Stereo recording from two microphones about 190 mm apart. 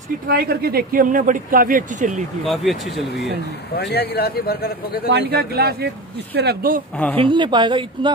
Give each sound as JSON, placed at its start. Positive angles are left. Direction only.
{"t": 0.3, "sound": "a man's voice", "side_deg": -55}
{"t": 2.4, "sound": "speech", "side_deg": 0}
{"t": 3.7, "sound": "speech", "side_deg": 55}
{"t": 5.3, "sound": "speech", "side_deg": -55}
{"t": 7.2, "sound": "a woman's voice", "side_deg": -25}